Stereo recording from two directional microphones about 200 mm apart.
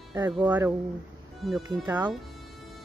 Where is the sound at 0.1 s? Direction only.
10° right (ahead or behind).